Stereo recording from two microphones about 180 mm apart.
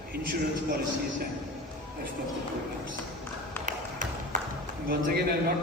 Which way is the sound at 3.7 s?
45° right (ahead or behind).